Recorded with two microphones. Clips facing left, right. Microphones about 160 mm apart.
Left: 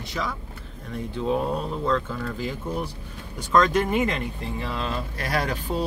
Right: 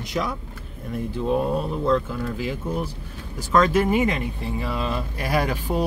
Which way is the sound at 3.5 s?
5° right (ahead or behind).